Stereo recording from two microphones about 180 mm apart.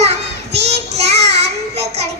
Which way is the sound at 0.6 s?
35° right (ahead or behind).